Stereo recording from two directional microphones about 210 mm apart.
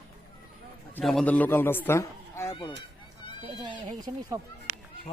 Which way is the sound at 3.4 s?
20° right (ahead or behind).